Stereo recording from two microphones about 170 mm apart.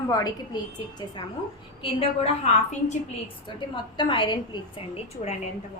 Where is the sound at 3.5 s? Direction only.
25° left (ahead or behind).